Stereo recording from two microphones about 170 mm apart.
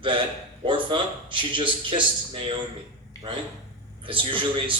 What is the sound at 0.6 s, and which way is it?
Speech, 30° right (ahead or behind).